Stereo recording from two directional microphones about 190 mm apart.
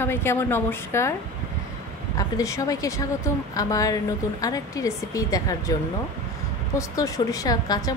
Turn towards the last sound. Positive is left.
turn(degrees=20)  # may be behind; listen again after turning